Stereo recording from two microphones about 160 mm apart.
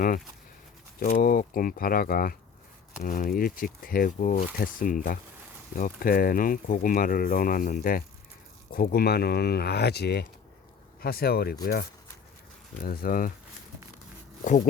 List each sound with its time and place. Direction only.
0.9 s speech: 60° left (ahead or behind); by 10.2 s 90° left
11.0 s speech: 75° left (ahead or behind)
14.4 s speech: 50° left (ahead or behind)